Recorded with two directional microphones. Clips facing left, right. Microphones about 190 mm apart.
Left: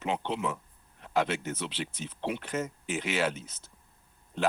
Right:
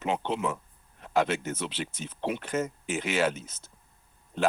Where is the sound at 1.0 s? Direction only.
45° right (ahead or behind).